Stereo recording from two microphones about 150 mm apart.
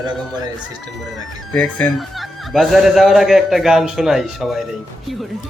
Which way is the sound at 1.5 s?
5° left (ahead or behind).